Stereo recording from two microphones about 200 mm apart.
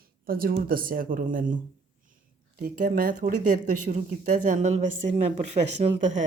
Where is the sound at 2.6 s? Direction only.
45° right (ahead or behind).